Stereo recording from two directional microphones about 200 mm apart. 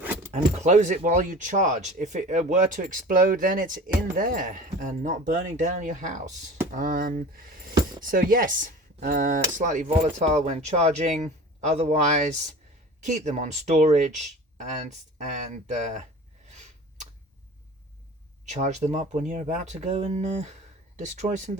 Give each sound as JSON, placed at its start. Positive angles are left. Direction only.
{"t": 0.0, "sound": "keys jangling", "side_deg": -10}
{"t": 0.3, "sound": "speech", "side_deg": -35}
{"t": 18.4, "sound": "speech", "side_deg": -35}